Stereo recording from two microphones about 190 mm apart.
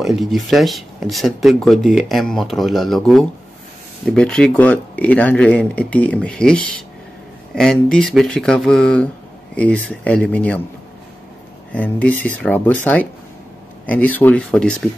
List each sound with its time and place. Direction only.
0.0 s speech: centre (ahead or behind)
11.7 s speech: 5° left (ahead or behind)